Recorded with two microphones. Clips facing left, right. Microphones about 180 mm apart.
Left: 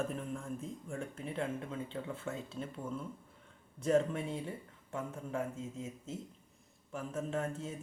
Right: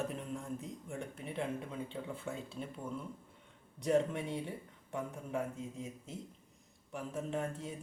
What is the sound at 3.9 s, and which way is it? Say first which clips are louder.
Speech: left 1 dB; 20° right (ahead or behind).